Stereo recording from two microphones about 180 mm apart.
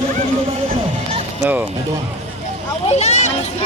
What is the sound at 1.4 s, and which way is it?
Speech, 10° right (ahead or behind).